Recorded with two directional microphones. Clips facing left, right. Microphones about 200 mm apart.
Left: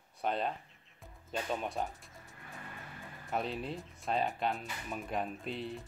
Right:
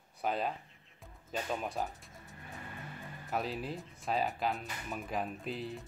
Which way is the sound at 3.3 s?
Centre (ahead or behind).